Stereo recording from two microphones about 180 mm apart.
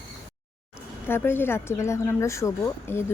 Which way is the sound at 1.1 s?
10° left (ahead or behind).